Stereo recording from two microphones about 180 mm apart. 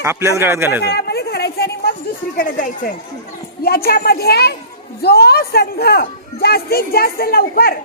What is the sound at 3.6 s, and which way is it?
Speech, 60° left (ahead or behind).